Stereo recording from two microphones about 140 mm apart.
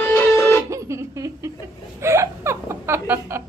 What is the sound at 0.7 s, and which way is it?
Music, 20° right (ahead or behind).